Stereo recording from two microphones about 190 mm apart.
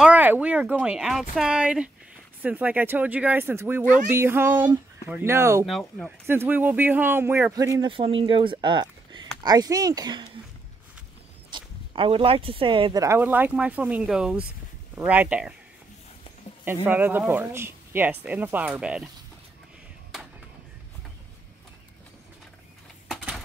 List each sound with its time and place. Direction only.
0.0 s speech: 10° right (ahead or behind)
5.7 s speech: centre (ahead or behind)
6.2 s speech: 10° right (ahead or behind)
11.5 s speech: 25° right (ahead or behind); by 15.5 s 5° right (ahead or behind)
16.6 s speech: 10° right (ahead or behind)
23.0 s a sound: centre (ahead or behind)